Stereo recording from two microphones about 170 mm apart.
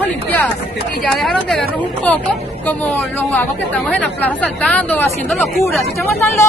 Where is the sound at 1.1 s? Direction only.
Centre (ahead or behind).